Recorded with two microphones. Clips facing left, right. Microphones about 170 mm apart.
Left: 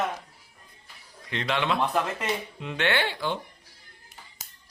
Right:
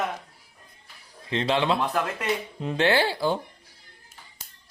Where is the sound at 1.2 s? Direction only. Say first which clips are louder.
Right 4 dB; 30° right (ahead or behind).